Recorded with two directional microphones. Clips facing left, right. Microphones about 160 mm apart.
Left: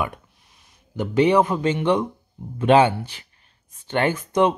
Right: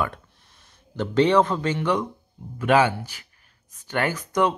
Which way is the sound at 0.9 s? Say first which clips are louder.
Left 1 dB; 15° left (ahead or behind).